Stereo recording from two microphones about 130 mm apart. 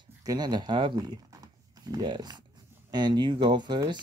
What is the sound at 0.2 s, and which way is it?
Speech, 30° right (ahead or behind).